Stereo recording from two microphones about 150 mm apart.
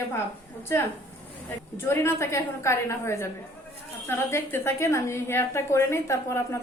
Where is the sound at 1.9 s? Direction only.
15° left (ahead or behind).